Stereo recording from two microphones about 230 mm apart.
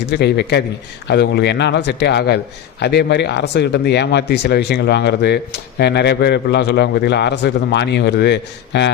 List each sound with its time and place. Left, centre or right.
0.1 s a man's voice: left